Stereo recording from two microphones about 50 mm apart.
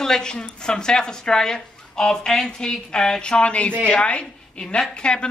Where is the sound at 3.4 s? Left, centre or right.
Left.